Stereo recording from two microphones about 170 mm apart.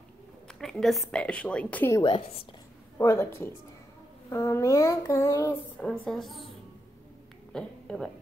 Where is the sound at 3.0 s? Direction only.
15° left (ahead or behind); by 6.5 s centre (ahead or behind).